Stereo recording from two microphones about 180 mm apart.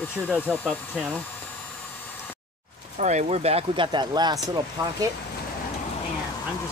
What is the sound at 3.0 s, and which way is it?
Speech, 40° right (ahead or behind).